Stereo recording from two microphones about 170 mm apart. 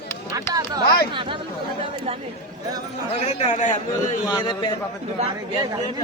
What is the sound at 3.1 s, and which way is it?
Speech, 35° left (ahead or behind).